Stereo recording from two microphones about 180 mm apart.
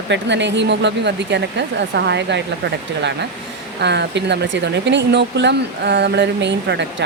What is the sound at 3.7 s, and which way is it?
Speech, 75° right (ahead or behind).